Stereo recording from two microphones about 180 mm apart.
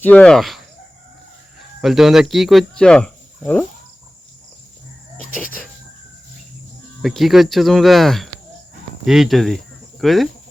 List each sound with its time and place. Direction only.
0.0 s speech: 5° left (ahead or behind)
1.8 s speech: centre (ahead or behind)
5.1 s a sound: 50° left (ahead or behind)
7.0 s speech: centre (ahead or behind)